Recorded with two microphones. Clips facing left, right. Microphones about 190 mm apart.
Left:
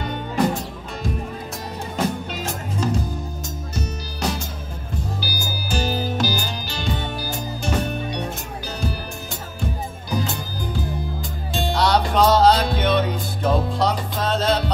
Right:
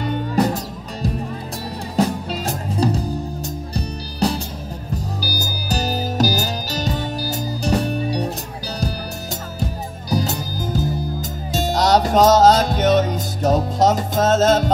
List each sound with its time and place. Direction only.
2.4 s music: 35° right (ahead or behind)
9.6 s music: 40° right (ahead or behind)